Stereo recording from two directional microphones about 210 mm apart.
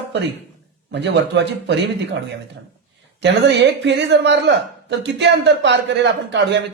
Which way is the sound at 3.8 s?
55° right (ahead or behind).